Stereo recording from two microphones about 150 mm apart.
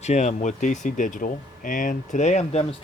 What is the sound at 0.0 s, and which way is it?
Speech, 50° left (ahead or behind).